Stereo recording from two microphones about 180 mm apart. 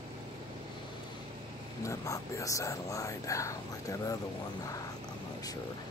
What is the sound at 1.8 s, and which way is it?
Speech, 15° left (ahead or behind).